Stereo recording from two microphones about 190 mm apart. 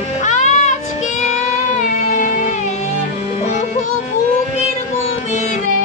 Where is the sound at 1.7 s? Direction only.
40° left (ahead or behind).